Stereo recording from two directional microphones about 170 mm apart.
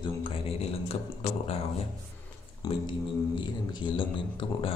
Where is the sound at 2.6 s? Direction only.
25° left (ahead or behind).